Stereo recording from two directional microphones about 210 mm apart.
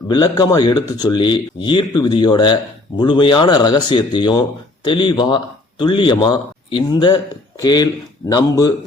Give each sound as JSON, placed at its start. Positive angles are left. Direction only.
{"t": 0.1, "sound": "speech", "side_deg": 20}